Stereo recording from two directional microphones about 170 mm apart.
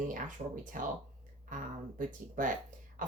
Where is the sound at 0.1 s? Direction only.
50° right (ahead or behind).